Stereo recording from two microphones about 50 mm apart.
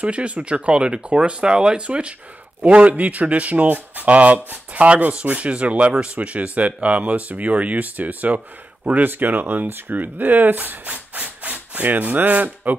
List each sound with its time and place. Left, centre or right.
0.0 s speech: right